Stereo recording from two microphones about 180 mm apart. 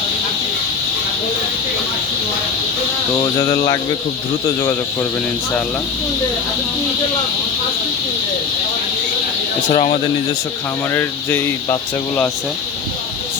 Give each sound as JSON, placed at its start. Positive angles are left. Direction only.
{"t": 9.7, "sound": "speech", "side_deg": 40}
{"t": 10.9, "sound": "speech", "side_deg": 10}